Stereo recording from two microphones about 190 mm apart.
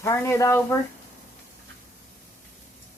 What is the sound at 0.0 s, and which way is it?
Speech, 15° left (ahead or behind).